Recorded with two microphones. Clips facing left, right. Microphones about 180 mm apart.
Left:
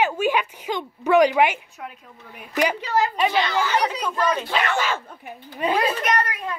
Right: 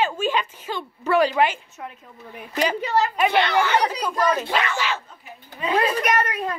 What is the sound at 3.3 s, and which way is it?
Speech, 60° right (ahead or behind).